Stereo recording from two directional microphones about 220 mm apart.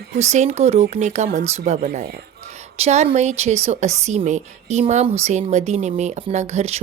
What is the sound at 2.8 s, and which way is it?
A woman's voice, 30° right (ahead or behind).